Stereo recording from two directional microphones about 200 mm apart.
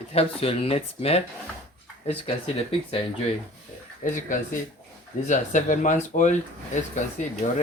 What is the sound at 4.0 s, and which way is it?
Speech, 40° left (ahead or behind).